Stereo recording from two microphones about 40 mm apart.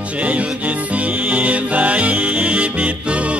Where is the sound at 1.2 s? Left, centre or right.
Right.